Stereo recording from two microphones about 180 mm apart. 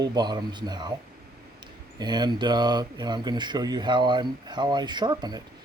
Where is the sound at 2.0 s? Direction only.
25° right (ahead or behind).